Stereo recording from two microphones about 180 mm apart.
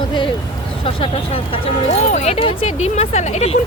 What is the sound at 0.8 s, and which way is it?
Vehicle, 30° left (ahead or behind).